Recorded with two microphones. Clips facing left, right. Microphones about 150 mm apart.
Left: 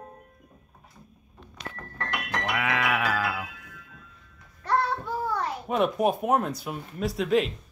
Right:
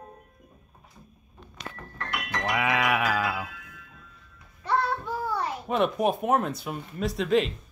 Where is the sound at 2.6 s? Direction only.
15° right (ahead or behind).